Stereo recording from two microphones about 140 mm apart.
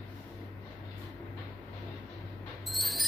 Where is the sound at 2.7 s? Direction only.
Centre (ahead or behind).